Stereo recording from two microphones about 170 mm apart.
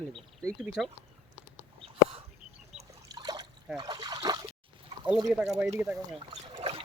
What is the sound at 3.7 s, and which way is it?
Trickle, 25° right (ahead or behind).